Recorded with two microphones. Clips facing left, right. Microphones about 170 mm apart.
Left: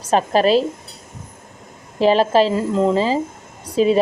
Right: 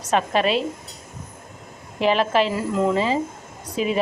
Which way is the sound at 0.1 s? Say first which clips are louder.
Left 5 dB; 35° left (ahead or behind).